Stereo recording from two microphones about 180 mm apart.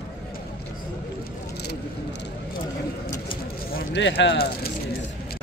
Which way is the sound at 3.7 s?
65° left (ahead or behind).